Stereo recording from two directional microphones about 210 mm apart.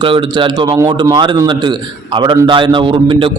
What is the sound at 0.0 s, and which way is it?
A man's voice, 25° right (ahead or behind).